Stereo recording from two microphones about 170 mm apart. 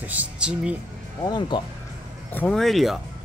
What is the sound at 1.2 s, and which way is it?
Speech, 25° left (ahead or behind).